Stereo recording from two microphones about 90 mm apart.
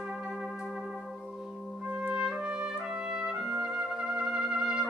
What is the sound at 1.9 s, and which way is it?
Trumpet, 10° right (ahead or behind).